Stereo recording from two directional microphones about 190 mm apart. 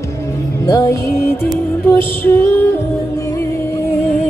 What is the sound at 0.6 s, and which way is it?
Music, 15° left (ahead or behind).